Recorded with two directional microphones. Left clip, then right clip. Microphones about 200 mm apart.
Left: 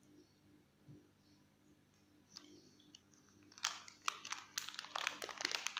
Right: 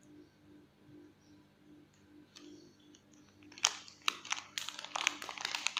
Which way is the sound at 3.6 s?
Centre (ahead or behind).